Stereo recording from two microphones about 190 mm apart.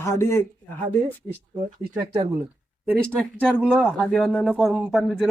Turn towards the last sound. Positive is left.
turn(degrees=0)  # may be behind; listen again after turning